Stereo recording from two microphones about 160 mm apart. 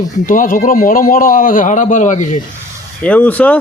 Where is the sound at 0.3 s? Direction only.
55° left (ahead or behind).